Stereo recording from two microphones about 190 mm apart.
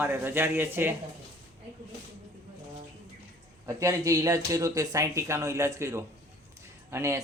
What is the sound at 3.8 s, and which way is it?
Speech, 15° right (ahead or behind).